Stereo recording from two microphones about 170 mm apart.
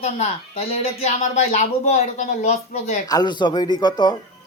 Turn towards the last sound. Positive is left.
turn(degrees=25)  # may be behind; listen again after turning